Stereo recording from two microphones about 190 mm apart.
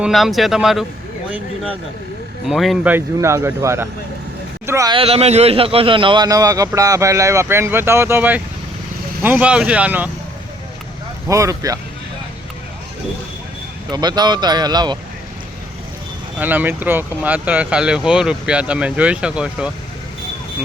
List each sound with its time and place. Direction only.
0.0 s speech: centre (ahead or behind)
2.5 s speech: centre (ahead or behind)
2.9 s speech: 15° right (ahead or behind)
4.9 s speech: 30° right (ahead or behind); by 10.1 s 5° right (ahead or behind)
11.3 s speech: 15° right (ahead or behind)
13.9 s speech: 20° right (ahead or behind)
16.4 s speech: 10° right (ahead or behind)